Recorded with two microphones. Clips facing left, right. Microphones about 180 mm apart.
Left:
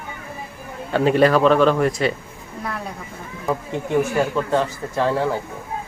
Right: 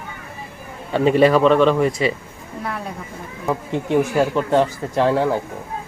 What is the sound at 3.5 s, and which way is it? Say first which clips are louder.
Speech: right 2 dB; 20° right (ahead or behind).